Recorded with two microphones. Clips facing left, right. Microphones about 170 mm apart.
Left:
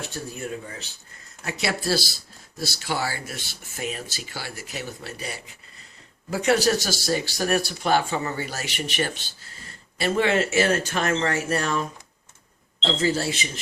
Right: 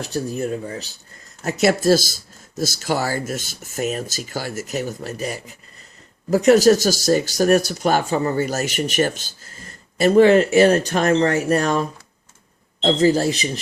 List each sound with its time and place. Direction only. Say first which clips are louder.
0.0 s speech: right 9 dB; 40° right (ahead or behind)